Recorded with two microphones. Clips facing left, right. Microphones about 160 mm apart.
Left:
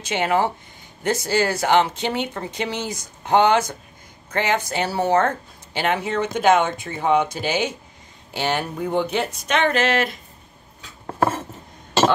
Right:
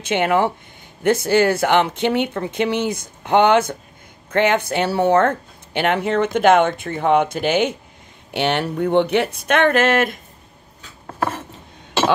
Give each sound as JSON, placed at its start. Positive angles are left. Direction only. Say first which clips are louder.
{"t": 0.0, "sound": "speech", "louder": "right 3 dB", "side_deg": -55}
{"t": 11.1, "sound": "cutlery", "louder": "left 3 dB", "side_deg": 25}